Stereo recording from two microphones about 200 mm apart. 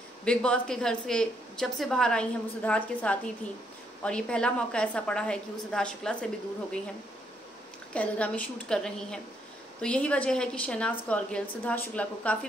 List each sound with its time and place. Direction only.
0.2 s a woman's voice: 5° left (ahead or behind)
7.9 s a woman's voice: 5° left (ahead or behind)